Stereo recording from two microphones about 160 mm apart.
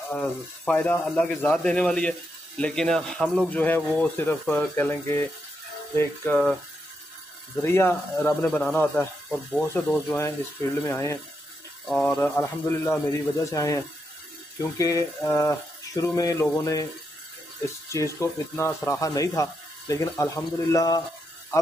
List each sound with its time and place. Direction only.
0.1 s speech: 5° left (ahead or behind)
7.6 s speech: 15° left (ahead or behind)